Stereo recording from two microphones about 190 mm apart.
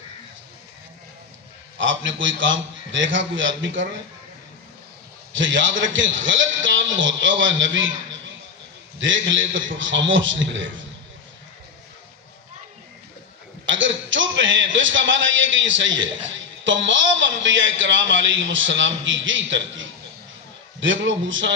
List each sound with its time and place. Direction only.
1.8 s a man's voice: 80° right
5.3 s a man's voice: 80° right
13.7 s a man's voice: 80° right